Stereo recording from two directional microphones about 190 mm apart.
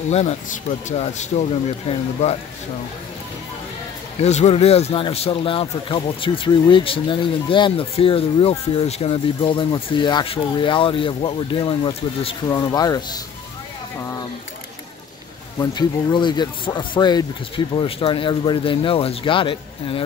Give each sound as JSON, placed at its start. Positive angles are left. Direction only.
{"t": 0.1, "sound": "speech", "side_deg": 35}
{"t": 4.2, "sound": "speech", "side_deg": 35}
{"t": 15.6, "sound": "speech", "side_deg": 20}